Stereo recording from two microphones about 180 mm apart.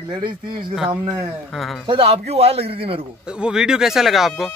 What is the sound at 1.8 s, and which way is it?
A man's voice, 30° right (ahead or behind).